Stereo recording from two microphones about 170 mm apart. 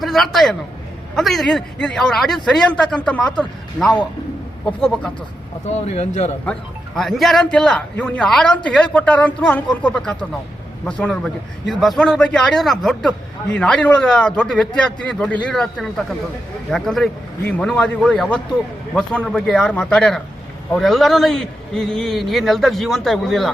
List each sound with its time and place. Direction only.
0.0 s a man's voice: centre (ahead or behind)
5.6 s speech: 40° left (ahead or behind)
6.4 s a man's voice: 5° left (ahead or behind)